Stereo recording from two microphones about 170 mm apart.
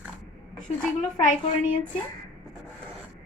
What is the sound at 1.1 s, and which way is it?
Speech, 50° left (ahead or behind).